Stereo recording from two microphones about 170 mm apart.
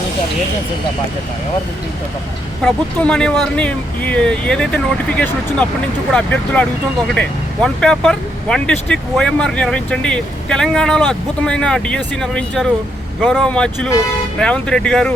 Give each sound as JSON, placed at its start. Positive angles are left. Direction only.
{"t": 2.6, "sound": "speech", "side_deg": 5}